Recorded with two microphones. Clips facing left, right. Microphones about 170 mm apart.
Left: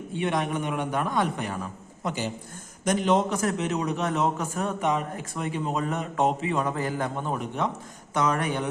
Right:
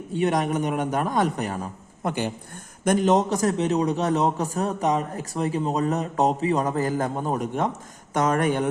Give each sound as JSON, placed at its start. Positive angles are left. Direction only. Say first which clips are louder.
{"t": 0.1, "sound": "a man's voice", "louder": "right 4 dB", "side_deg": -40}
{"t": 2.0, "sound": "speech", "louder": "right 4 dB", "side_deg": -55}
{"t": 2.8, "sound": "a man's voice", "louder": "right 3 dB", "side_deg": -45}